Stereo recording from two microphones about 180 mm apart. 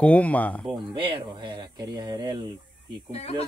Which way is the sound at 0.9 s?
30° right (ahead or behind).